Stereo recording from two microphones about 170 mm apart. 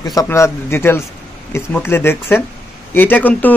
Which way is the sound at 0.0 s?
20° left (ahead or behind).